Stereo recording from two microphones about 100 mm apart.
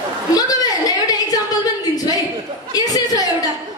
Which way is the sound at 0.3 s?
40° left (ahead or behind).